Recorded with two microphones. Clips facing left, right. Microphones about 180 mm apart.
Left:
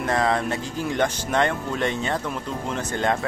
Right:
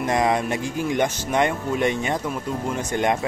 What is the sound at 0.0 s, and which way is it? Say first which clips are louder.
A man's voice: right 1 dB; 15° right (ahead or behind).